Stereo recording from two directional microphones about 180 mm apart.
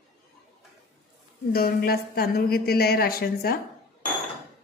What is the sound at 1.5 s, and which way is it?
A woman's voice, 55° left (ahead or behind).